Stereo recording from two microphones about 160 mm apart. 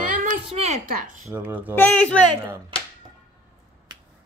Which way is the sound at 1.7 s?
10° left (ahead or behind).